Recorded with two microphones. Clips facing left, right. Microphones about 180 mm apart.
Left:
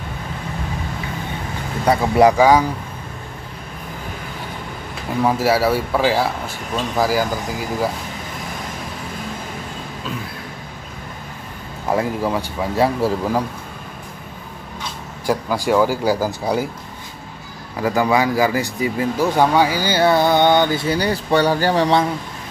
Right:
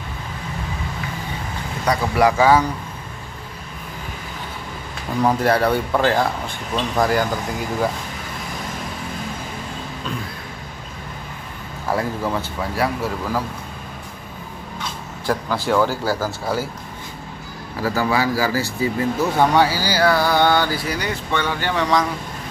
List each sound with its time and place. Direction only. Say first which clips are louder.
1.9 s speech: left 4 dB; 20° left (ahead or behind)
5.2 s speech: left 1 dB; 5° left (ahead or behind)
11.9 s speech: left 3 dB; 15° left (ahead or behind)
12.8 s speech: left 6 dB; 25° left (ahead or behind)
15.2 s speech: left 2 dB; 10° left (ahead or behind)
17.8 s speech: left 3 dB; 20° left (ahead or behind)